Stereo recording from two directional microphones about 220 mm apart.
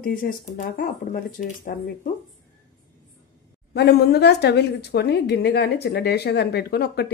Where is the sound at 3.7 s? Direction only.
50° left (ahead or behind).